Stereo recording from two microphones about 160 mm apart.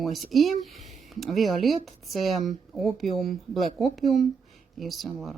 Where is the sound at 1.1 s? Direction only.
Centre (ahead or behind).